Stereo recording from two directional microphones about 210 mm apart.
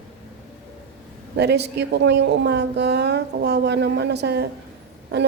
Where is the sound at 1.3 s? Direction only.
50° right (ahead or behind).